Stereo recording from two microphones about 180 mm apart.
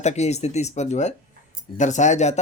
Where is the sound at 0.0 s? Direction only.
40° left (ahead or behind).